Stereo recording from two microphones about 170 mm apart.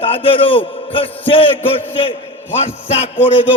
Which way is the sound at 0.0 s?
30° left (ahead or behind).